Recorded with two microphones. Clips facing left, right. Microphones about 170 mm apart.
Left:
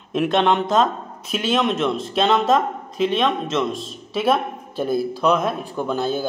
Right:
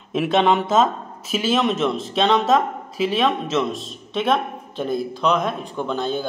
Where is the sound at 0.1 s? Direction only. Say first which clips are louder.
Even; centre (ahead or behind).